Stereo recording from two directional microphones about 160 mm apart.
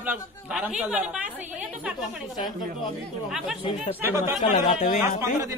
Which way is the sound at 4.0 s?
15° right (ahead or behind).